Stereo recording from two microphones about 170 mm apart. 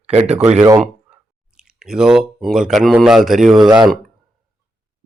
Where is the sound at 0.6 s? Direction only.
20° right (ahead or behind).